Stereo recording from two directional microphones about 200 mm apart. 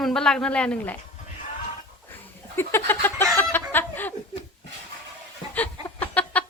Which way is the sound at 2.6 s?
10° left (ahead or behind).